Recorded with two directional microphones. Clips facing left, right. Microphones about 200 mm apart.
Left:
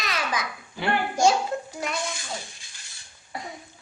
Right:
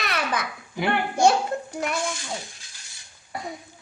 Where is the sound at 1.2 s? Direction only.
60° right (ahead or behind).